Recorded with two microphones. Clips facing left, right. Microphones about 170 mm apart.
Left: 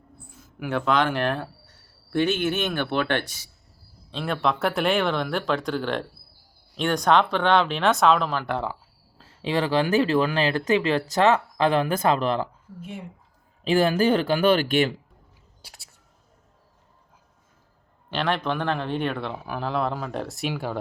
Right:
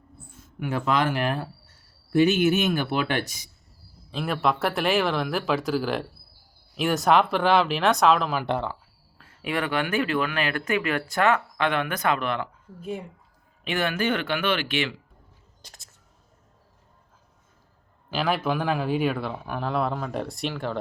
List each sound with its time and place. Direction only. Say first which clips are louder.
0.3 s speech: left 1 dB; centre (ahead or behind)
9.1 s speech: left 3 dB; 30° left (ahead or behind)
13.7 s speech: left 6 dB; 35° left (ahead or behind)
15.6 s music: left 1 dB; 5° left (ahead or behind)
18.1 s speech: even; 5° right (ahead or behind)